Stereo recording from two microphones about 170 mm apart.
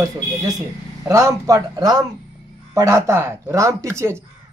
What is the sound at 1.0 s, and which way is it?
Speech, 20° right (ahead or behind).